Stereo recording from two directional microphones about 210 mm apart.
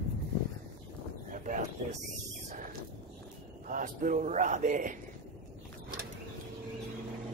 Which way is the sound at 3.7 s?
40° right (ahead or behind).